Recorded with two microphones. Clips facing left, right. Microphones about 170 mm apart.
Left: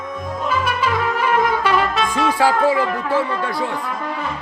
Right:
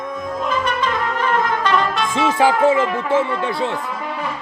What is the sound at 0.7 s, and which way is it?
Trumpet, 10° left (ahead or behind).